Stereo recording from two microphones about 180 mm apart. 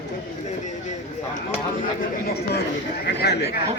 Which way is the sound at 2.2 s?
60° left (ahead or behind).